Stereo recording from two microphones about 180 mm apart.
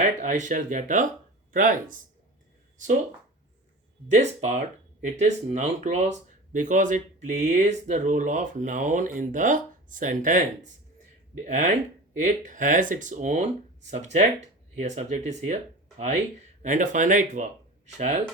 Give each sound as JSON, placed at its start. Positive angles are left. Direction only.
{"t": 0.0, "sound": "speech", "side_deg": -45}
{"t": 4.1, "sound": "speech", "side_deg": -40}
{"t": 16.6, "sound": "speech", "side_deg": -45}